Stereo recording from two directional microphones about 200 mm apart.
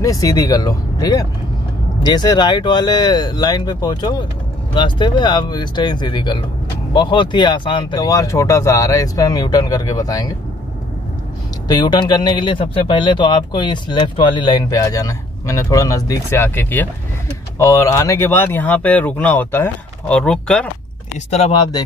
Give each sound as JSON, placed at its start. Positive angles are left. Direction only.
{"t": 0.0, "sound": "speech", "side_deg": 15}
{"t": 11.6, "sound": "speech", "side_deg": 20}
{"t": 21.3, "sound": "speech", "side_deg": 30}